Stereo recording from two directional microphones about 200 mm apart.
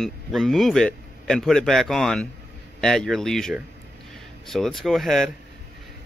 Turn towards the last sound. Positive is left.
turn(degrees=0)  # may be behind; listen again after turning